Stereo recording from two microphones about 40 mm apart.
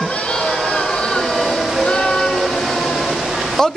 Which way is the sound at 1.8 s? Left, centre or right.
Left.